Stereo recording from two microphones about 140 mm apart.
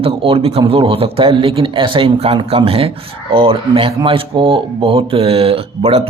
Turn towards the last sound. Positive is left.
turn(degrees=-45)  # may be behind; listen again after turning